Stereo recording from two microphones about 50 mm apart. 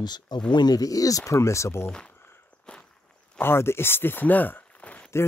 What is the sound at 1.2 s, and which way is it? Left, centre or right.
Speech, left.